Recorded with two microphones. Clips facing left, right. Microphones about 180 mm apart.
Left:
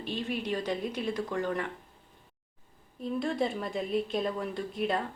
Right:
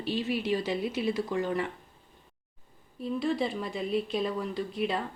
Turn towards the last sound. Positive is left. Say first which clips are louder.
# even
turn(degrees=0)  # may be behind; listen again after turning